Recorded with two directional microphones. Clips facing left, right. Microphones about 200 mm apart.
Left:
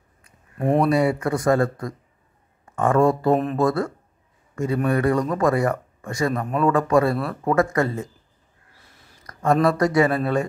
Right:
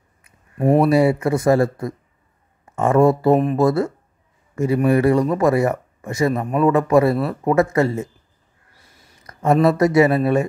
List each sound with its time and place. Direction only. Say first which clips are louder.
0.6 s speech: right 4 dB; 5° right (ahead or behind)
0.9 s speech: right 4 dB; 25° right (ahead or behind)
3.3 s speech: right 4 dB; 5° right (ahead or behind)
3.6 s speech: right 4 dB; 25° right (ahead or behind)
6.3 s speech: right 3 dB; 5° right (ahead or behind)
6.6 s speech: right 3 dB; 20° right (ahead or behind)
9.2 s a sound: right 3 dB; 25° right (ahead or behind)
9.8 s speech: right 4 dB; 20° right (ahead or behind)